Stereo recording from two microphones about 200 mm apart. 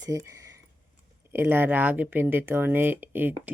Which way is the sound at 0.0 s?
15° right (ahead or behind).